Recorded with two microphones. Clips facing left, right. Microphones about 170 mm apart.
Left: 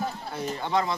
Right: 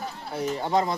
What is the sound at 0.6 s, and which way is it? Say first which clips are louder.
Speech: right 2 dB; 40° right (ahead or behind).